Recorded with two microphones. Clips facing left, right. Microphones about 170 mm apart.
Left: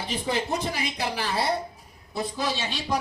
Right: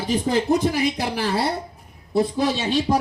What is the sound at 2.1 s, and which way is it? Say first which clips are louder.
Speech: right 8 dB; 50° right (ahead or behind).